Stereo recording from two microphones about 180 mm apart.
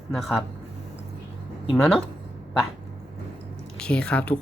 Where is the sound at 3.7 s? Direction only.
5° left (ahead or behind).